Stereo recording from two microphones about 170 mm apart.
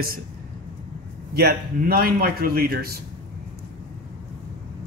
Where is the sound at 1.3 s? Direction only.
65° right (ahead or behind).